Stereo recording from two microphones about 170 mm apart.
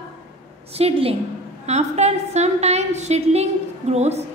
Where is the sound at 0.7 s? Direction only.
35° right (ahead or behind).